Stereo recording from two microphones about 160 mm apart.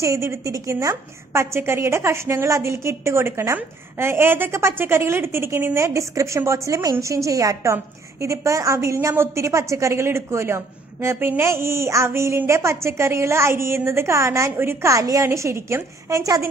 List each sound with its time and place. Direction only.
0.0 s a woman's voice: 20° right (ahead or behind)